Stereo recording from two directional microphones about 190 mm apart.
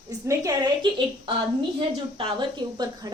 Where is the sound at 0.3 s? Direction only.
20° right (ahead or behind).